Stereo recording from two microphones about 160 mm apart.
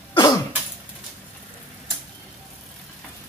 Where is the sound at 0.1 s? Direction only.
30° left (ahead or behind).